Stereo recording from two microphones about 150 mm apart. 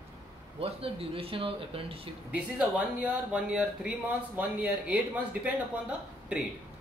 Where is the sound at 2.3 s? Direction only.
10° right (ahead or behind).